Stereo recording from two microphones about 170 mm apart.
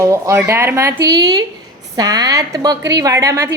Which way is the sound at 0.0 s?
15° right (ahead or behind).